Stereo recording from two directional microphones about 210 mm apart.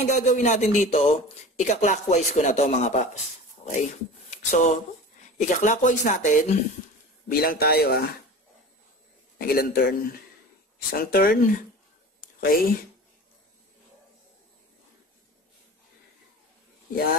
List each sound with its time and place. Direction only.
0.0 s a man's voice: 35° left (ahead or behind)
9.4 s a man's voice: 45° left (ahead or behind)